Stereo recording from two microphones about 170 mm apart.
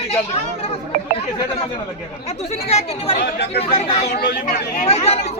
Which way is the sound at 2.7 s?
40° left (ahead or behind).